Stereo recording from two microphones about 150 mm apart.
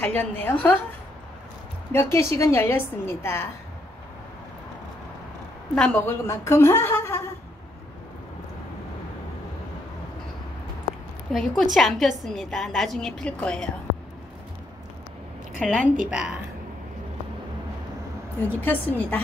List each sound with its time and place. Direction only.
0.0 s a woman's voice: 10° left (ahead or behind)
1.9 s a woman's voice: 20° left (ahead or behind)
5.8 s a woman's voice: 10° left (ahead or behind)
11.3 s a woman's voice: centre (ahead or behind)
15.6 s a woman's voice: centre (ahead or behind)
18.6 s a woman's voice: 10° left (ahead or behind)